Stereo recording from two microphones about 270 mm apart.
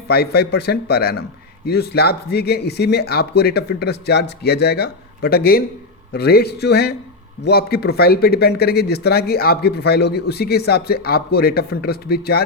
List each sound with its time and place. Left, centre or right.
0.1 s speech: left